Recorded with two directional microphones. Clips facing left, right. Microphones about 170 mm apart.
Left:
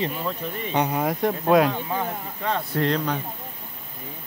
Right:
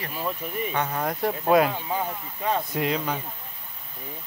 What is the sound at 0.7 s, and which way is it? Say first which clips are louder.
Speech: left 6 dB; 20° left (ahead or behind).